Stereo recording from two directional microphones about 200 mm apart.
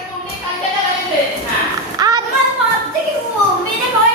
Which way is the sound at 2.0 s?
20° right (ahead or behind).